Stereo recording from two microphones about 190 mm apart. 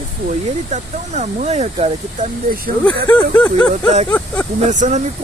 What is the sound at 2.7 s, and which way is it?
Speech, 45° right (ahead or behind).